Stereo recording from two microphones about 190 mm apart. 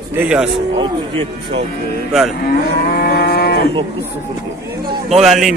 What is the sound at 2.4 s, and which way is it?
Livestock, 55° left (ahead or behind).